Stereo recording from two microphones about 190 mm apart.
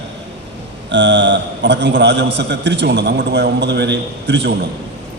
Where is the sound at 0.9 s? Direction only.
70° right (ahead or behind).